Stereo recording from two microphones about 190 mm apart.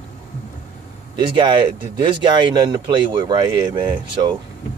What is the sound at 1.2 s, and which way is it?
Speech, 25° right (ahead or behind).